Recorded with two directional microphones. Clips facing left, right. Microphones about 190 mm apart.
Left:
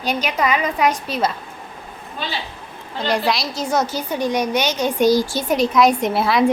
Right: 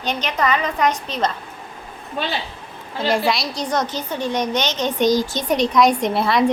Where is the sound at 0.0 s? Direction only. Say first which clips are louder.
Left 1 dB; 10° left (ahead or behind).